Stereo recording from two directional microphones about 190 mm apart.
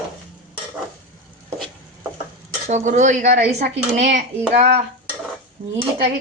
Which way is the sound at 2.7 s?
40° right (ahead or behind).